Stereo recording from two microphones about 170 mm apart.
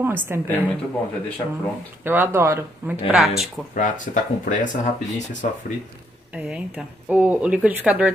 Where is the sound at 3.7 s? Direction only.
50° left (ahead or behind).